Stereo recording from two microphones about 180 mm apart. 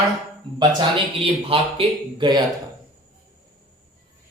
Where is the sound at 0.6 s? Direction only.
30° right (ahead or behind).